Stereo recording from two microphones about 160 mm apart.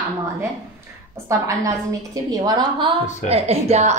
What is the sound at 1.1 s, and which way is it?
A woman's voice, 20° right (ahead or behind).